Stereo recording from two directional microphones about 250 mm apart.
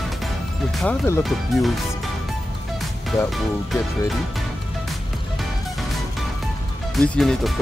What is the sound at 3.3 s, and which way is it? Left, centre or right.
Speech, centre.